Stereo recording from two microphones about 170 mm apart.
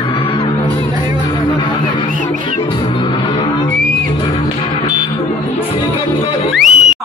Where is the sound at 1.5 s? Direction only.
30° left (ahead or behind).